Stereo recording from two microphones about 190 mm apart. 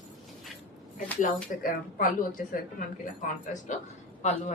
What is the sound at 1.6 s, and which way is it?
A woman's voice, 45° left (ahead or behind).